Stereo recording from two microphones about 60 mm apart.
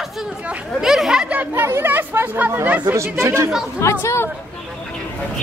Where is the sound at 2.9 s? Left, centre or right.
Right.